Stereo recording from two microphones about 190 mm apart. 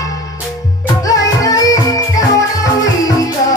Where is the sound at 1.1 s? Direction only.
20° left (ahead or behind).